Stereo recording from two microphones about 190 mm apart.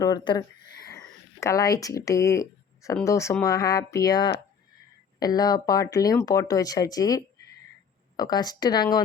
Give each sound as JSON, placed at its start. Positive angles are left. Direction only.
{"t": 0.0, "sound": "speech", "side_deg": 20}